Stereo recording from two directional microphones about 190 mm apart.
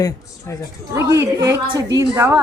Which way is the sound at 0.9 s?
15° right (ahead or behind).